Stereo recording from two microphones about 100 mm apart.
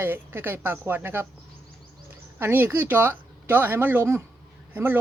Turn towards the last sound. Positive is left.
turn(degrees=-20)  # may be behind; listen again after turning